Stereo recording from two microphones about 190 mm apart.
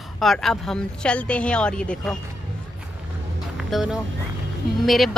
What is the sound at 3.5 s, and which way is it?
Speech, centre (ahead or behind).